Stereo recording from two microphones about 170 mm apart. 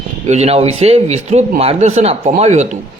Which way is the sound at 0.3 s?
40° right (ahead or behind).